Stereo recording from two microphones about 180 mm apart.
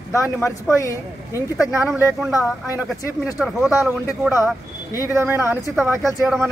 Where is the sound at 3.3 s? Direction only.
Centre (ahead or behind).